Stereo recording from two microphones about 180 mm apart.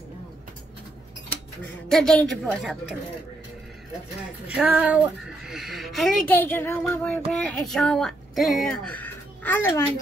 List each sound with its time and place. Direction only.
1.9 s speech: 5° left (ahead or behind)
4.6 s speech: 10° right (ahead or behind); by 9.8 s 15° left (ahead or behind)